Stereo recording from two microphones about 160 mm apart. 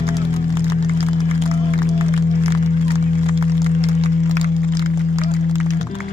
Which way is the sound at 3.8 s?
40° right (ahead or behind).